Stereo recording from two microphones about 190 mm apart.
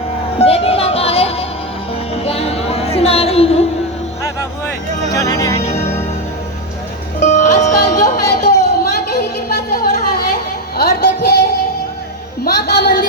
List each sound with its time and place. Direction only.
0.3 s music: 30° left (ahead or behind)
5.1 s speech: 15° left (ahead or behind)
7.2 s music: 40° left (ahead or behind)
8.1 s a sound: 60° left (ahead or behind)
10.8 s music: 55° left (ahead or behind)
12.5 s a woman's voice: 60° left (ahead or behind)